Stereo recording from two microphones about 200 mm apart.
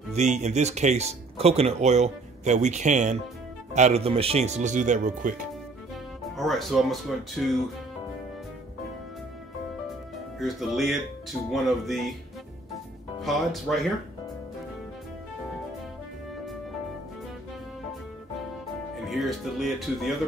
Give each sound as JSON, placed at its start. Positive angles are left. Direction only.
{"t": 0.1, "sound": "speech", "side_deg": -35}
{"t": 6.3, "sound": "speech", "side_deg": 0}
{"t": 10.4, "sound": "speech", "side_deg": 0}
{"t": 13.2, "sound": "speech", "side_deg": 0}
{"t": 19.0, "sound": "speech", "side_deg": 0}